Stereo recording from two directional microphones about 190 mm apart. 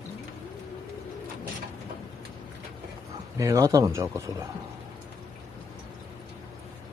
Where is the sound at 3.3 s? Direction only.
15° right (ahead or behind).